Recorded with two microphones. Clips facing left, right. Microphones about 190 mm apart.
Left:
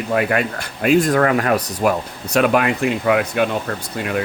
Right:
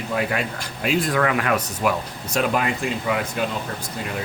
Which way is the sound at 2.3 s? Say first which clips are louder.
Left 6 dB; 70° left (ahead or behind).